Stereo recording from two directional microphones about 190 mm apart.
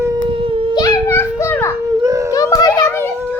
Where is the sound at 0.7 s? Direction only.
15° left (ahead or behind).